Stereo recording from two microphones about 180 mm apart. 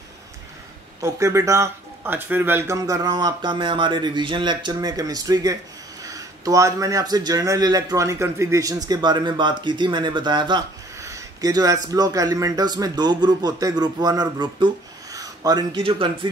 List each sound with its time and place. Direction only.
1.0 s speech: 15° right (ahead or behind)